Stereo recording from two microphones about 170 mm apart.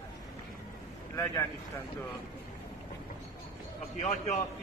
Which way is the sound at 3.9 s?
40° left (ahead or behind).